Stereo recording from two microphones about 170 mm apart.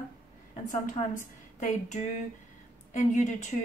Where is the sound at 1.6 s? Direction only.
45° left (ahead or behind).